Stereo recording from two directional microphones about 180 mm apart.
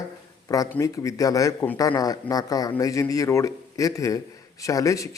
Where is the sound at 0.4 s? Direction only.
20° left (ahead or behind).